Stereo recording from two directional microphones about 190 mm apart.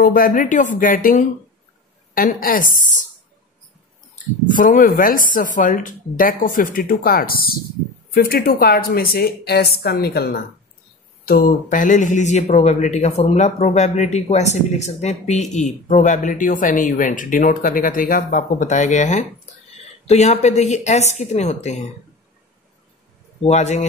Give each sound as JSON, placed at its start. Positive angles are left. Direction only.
{"t": 0.0, "sound": "speech", "side_deg": 50}
{"t": 4.6, "sound": "speech", "side_deg": 45}
{"t": 23.4, "sound": "speech", "side_deg": 35}